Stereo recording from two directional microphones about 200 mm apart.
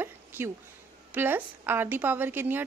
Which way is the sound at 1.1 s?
10° right (ahead or behind).